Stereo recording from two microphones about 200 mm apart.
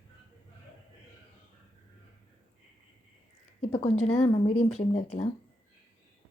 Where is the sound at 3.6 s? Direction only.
30° left (ahead or behind).